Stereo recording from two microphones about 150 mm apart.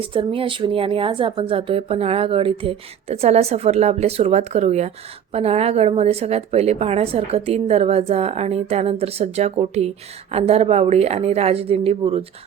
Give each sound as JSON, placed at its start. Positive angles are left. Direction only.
{"t": 0.0, "sound": "a woman's voice", "side_deg": -35}